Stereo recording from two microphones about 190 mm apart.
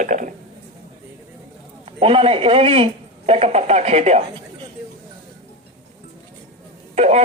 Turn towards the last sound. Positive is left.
turn(degrees=-35)  # may be behind; listen again after turning